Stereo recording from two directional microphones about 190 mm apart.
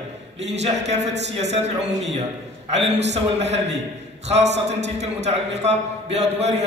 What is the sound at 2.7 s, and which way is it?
A man's voice, 35° right (ahead or behind).